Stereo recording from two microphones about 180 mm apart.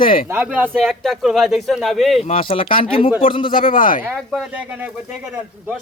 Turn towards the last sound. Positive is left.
turn(degrees=50)  # may be behind; listen again after turning